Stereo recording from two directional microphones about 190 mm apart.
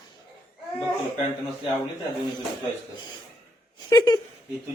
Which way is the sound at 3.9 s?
20° left (ahead or behind).